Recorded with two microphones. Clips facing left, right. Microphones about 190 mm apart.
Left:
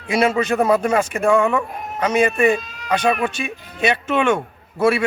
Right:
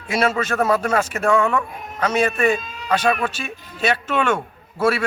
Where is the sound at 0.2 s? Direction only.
15° left (ahead or behind).